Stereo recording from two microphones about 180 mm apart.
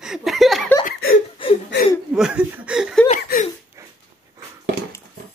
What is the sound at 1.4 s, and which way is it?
Whimper, 30° left (ahead or behind).